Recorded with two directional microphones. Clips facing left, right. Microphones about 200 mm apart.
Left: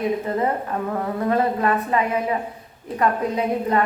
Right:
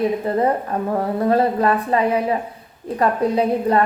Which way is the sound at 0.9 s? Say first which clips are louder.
Right 5 dB; 35° right (ahead or behind).